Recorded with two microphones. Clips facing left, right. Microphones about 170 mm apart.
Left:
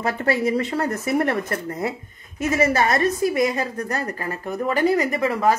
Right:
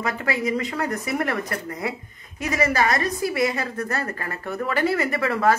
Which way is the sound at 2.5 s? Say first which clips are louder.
Left 2 dB; 25° left (ahead or behind).